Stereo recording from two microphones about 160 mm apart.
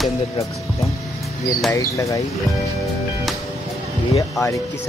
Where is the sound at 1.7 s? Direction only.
20° left (ahead or behind).